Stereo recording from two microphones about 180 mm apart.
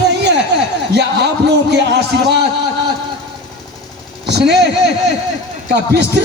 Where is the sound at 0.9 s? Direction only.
70° right (ahead or behind).